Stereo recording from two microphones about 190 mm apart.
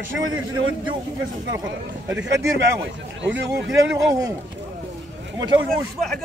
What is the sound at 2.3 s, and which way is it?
Speech, 15° right (ahead or behind).